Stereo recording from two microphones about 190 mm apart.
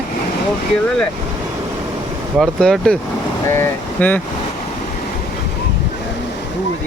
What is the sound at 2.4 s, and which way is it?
Speech, centre (ahead or behind).